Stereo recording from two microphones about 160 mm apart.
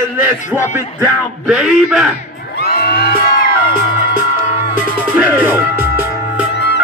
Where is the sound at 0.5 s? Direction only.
15° left (ahead or behind).